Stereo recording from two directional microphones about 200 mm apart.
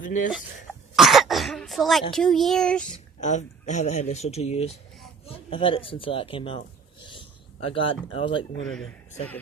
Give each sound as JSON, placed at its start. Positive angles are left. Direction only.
{"t": 0.9, "sound": "speech", "side_deg": 0}
{"t": 3.2, "sound": "speech", "side_deg": 35}
{"t": 7.1, "sound": "a sound", "side_deg": 25}
{"t": 8.1, "sound": "speech", "side_deg": 25}
{"t": 8.6, "sound": "speech", "side_deg": 5}